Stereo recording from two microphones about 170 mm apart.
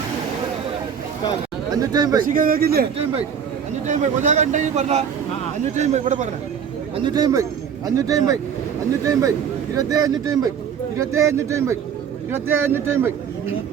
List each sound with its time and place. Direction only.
1.7 s speech: 20° right (ahead or behind)
2.2 s speech: 55° right (ahead or behind)
3.8 s speech: 45° right (ahead or behind)
6.9 s speech: 25° right (ahead or behind)
9.7 s speech: 20° right (ahead or behind)